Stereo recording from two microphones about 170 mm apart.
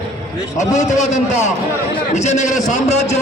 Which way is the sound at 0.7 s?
45° left (ahead or behind).